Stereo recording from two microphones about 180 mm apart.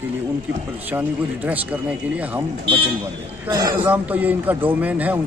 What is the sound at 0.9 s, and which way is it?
Speech, 10° right (ahead or behind).